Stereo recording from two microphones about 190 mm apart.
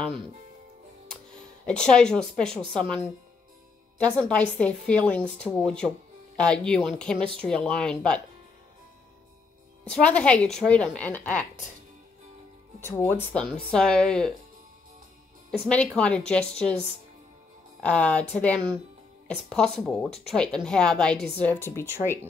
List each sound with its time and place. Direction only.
1.3 s speech: 5° left (ahead or behind)
4.0 s a woman's voice: 5° left (ahead or behind)
9.8 s a woman's voice: 5° left (ahead or behind)
12.8 s a woman's voice: 10° left (ahead or behind)
16.0 s a woman's voice: 5° left (ahead or behind)
17.7 s a woman's voice: 5° left (ahead or behind)